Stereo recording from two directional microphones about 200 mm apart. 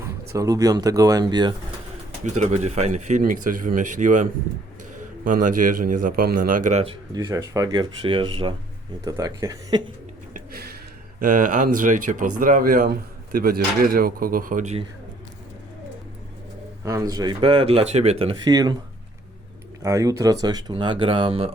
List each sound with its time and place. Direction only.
0.3 s speech: 20° right (ahead or behind)
2.2 s a man's voice: 35° right (ahead or behind)
7.1 s speech: 20° right (ahead or behind)
10.3 s a sound: 50° right (ahead or behind)
11.2 s a man's voice: 40° right (ahead or behind)
16.8 s speech: 15° right (ahead or behind)
19.8 s speech: 15° right (ahead or behind)